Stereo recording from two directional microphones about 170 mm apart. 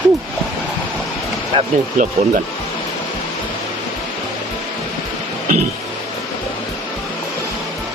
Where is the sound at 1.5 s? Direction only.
35° right (ahead or behind).